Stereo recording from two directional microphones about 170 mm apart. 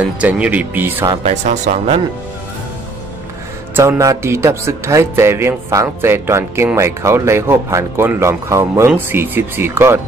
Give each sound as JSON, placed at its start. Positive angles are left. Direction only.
{"t": 0.0, "sound": "speech", "side_deg": -10}
{"t": 1.2, "sound": "speech", "side_deg": -45}
{"t": 3.7, "sound": "speech", "side_deg": -20}